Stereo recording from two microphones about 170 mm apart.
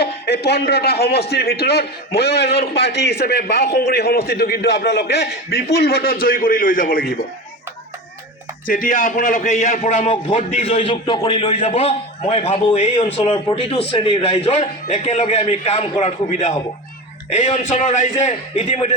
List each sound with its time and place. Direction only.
0.0 s a man's voice: 70° left (ahead or behind)
5.7 s a man's voice: 70° left (ahead or behind)
8.6 s a man's voice: 55° left (ahead or behind); by 11.4 s 30° left (ahead or behind)
11.4 s a man's voice: 40° left (ahead or behind)
17.7 s a man's voice: 45° left (ahead or behind)